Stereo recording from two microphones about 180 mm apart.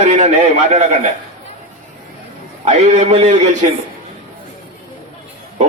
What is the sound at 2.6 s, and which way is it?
Speech, 35° right (ahead or behind).